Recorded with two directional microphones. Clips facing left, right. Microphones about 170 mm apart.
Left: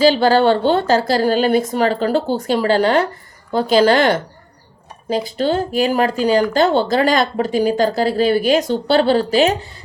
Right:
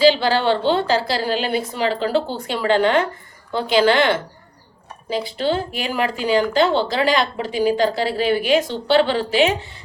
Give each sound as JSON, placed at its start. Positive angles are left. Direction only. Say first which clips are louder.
{"t": 0.0, "sound": "a woman's voice", "louder": "left 3 dB", "side_deg": 45}